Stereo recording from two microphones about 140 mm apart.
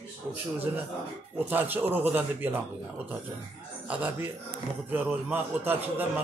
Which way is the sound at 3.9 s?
10° right (ahead or behind).